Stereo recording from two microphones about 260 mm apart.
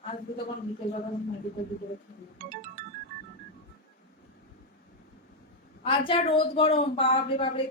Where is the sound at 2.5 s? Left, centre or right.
Right.